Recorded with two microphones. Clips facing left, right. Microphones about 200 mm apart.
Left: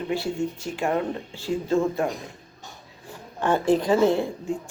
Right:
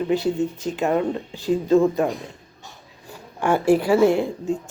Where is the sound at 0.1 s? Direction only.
20° right (ahead or behind).